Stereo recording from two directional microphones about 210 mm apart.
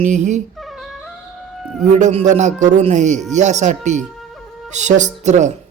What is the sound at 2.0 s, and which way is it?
Speech, 30° right (ahead or behind).